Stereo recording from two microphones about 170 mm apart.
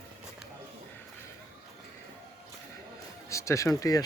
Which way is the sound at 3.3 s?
15° left (ahead or behind).